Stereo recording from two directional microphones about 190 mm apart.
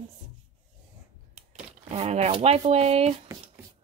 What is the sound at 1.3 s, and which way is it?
Speech, 35° right (ahead or behind).